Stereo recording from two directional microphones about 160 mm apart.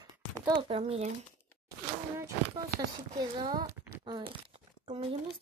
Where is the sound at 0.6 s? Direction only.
35° right (ahead or behind).